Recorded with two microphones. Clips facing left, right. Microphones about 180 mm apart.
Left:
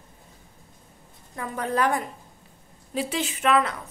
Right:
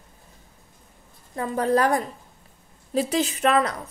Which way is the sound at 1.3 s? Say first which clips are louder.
Right 5 dB; 35° right (ahead or behind).